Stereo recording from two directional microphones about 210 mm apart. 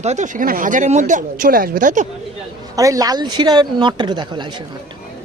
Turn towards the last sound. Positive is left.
turn(degrees=-20)  # may be behind; listen again after turning